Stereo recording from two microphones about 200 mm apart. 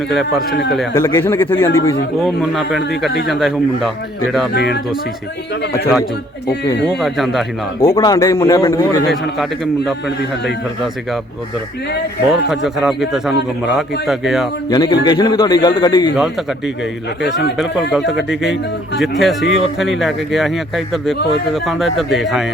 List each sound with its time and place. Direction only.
0.1 s speech: centre (ahead or behind)
0.9 s speech: 15° left (ahead or behind)
2.2 s speech: centre (ahead or behind)
4.5 s speech: 55° left (ahead or behind)
6.8 s speech: centre (ahead or behind)
7.8 s speech: 15° left (ahead or behind)
12.3 s speech: centre (ahead or behind)
14.7 s a man's voice: 20° left (ahead or behind)
17.9 s speech: centre (ahead or behind)